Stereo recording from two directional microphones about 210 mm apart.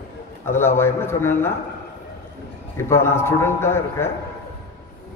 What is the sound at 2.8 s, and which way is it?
Speech, 10° left (ahead or behind).